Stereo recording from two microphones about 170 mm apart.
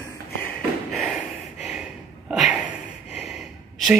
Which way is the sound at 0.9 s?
Centre (ahead or behind).